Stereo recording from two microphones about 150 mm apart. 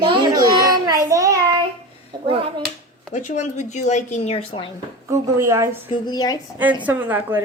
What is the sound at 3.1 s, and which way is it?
A woman's voice, 50° left (ahead or behind).